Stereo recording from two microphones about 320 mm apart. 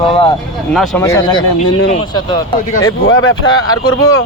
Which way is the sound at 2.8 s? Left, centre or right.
Left.